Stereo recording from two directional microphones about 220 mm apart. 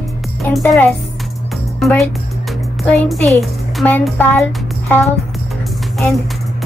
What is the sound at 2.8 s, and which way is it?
Music, centre (ahead or behind).